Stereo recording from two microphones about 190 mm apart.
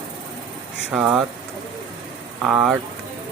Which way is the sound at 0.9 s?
5° right (ahead or behind).